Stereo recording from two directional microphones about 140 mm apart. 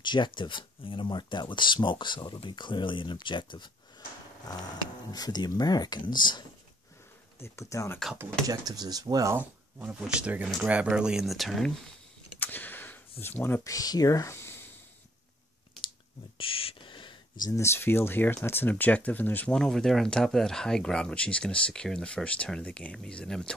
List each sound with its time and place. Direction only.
0.0 s speech: 35° left (ahead or behind)
5.1 s speech: 30° left (ahead or behind)
7.3 s speech: 20° left (ahead or behind)
8.2 s speech: 25° right (ahead or behind)
9.4 s speech: 10° right (ahead or behind)
12.4 s a sound: 15° left (ahead or behind)
13.2 s speech: 15° left (ahead or behind)
16.3 s gasp: 40° left (ahead or behind)
17.5 s speech: 20° left (ahead or behind)